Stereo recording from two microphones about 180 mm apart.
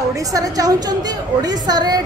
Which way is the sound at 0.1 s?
20° right (ahead or behind).